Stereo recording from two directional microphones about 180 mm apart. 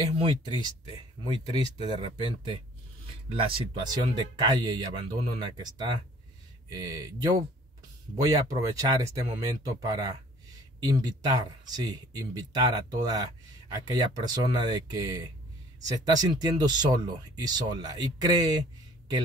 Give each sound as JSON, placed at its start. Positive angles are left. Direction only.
{"t": 1.6, "sound": "speech", "side_deg": -25}